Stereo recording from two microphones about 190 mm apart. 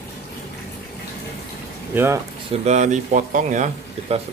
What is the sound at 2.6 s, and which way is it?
Speech, 40° right (ahead or behind).